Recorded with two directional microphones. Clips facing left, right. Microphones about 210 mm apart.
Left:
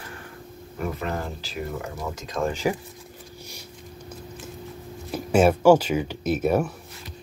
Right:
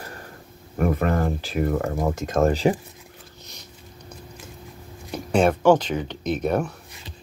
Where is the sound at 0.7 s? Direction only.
55° right (ahead or behind).